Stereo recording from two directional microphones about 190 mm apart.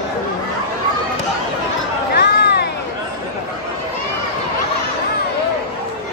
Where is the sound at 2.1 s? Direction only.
60° left (ahead or behind).